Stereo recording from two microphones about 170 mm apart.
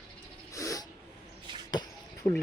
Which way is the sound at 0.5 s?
20° left (ahead or behind).